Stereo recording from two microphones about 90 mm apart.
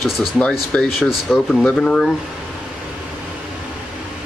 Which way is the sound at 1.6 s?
10° left (ahead or behind).